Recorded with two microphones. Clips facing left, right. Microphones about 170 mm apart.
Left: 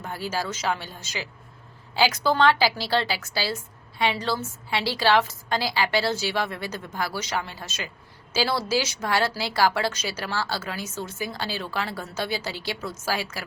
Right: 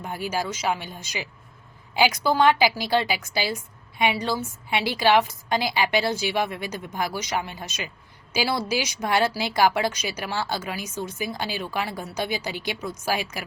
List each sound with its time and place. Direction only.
0.0 s a woman's voice: 15° right (ahead or behind)